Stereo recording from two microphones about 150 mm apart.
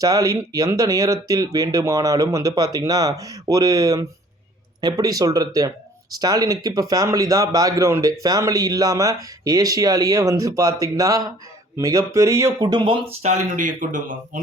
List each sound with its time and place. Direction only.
0.0 s speech: 25° right (ahead or behind)
13.2 s speech: 55° right (ahead or behind)